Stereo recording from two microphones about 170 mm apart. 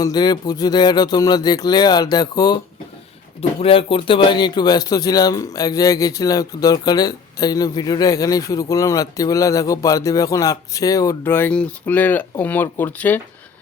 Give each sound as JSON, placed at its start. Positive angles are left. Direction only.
{"t": 0.0, "sound": "speech", "side_deg": 25}
{"t": 3.6, "sound": "speech", "side_deg": 30}